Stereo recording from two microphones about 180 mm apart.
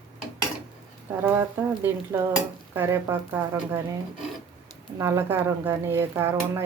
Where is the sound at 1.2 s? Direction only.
10° right (ahead or behind).